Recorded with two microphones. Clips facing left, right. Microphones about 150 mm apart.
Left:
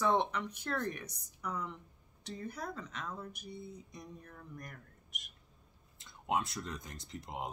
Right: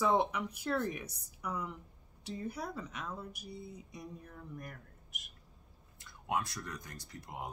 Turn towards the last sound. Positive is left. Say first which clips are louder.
# left 2 dB
turn(degrees=20)  # may be behind; listen again after turning